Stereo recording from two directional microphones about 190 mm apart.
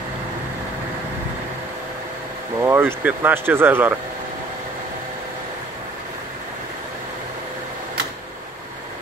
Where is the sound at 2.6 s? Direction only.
10° right (ahead or behind).